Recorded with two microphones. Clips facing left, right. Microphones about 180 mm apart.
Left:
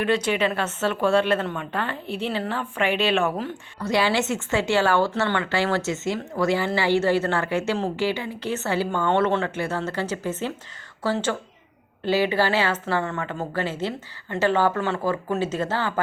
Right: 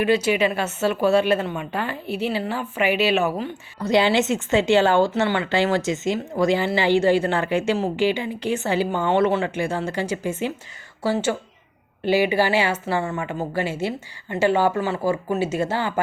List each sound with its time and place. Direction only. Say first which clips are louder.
0.0 s a woman's voice: right 3 dB; 10° right (ahead or behind)
3.8 s a woman's voice: right 4 dB; 20° right (ahead or behind)